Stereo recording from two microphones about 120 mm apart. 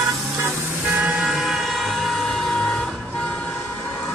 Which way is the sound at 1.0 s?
Centre (ahead or behind).